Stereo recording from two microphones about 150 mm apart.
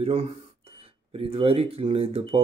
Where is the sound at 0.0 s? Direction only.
45° right (ahead or behind).